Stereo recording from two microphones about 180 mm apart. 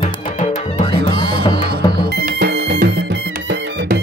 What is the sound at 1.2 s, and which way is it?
Music, 65° right (ahead or behind).